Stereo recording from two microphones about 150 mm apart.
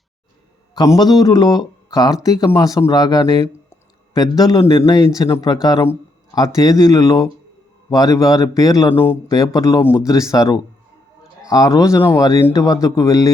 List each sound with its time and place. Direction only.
0.8 s speech: 25° left (ahead or behind)
9.3 s speech: 25° left (ahead or behind)